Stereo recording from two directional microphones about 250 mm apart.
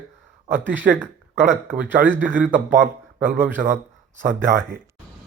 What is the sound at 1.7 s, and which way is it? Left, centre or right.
Speech, centre.